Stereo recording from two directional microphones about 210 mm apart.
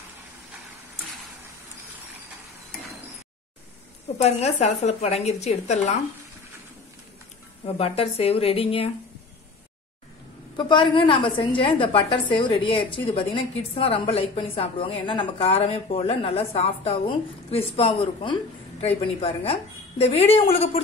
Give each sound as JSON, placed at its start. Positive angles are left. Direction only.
{"t": 4.2, "sound": "a woman's voice", "side_deg": 30}
{"t": 7.6, "sound": "a woman's voice", "side_deg": 30}
{"t": 10.5, "sound": "a woman's voice", "side_deg": 20}